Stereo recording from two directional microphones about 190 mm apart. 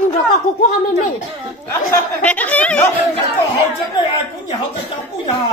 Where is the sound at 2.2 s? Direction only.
5° left (ahead or behind).